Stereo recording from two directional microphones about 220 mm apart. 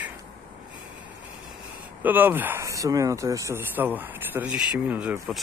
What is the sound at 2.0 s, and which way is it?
Speech, 10° right (ahead or behind).